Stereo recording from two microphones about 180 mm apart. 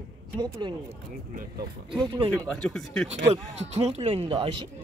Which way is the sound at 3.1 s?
40° right (ahead or behind).